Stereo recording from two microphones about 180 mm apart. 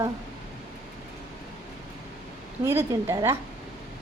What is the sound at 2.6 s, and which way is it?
Speech, 15° right (ahead or behind).